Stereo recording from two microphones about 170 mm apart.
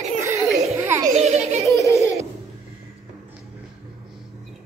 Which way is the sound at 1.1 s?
40° right (ahead or behind).